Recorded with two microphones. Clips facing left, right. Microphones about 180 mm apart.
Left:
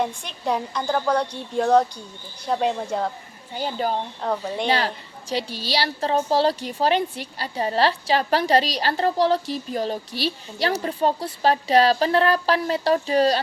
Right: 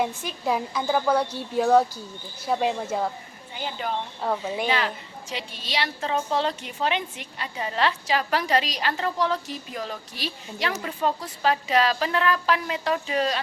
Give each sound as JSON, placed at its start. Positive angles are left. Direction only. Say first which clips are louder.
{"t": 0.0, "sound": "a woman's voice", "louder": "left 1 dB", "side_deg": -5}
{"t": 3.5, "sound": "a woman's voice", "louder": "left 5 dB", "side_deg": 40}
{"t": 4.2, "sound": "a woman's voice", "louder": "right 1 dB", "side_deg": -5}
{"t": 5.3, "sound": "a woman's voice", "louder": "left 7 dB", "side_deg": 35}